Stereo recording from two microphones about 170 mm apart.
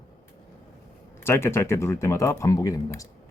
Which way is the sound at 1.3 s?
15° left (ahead or behind).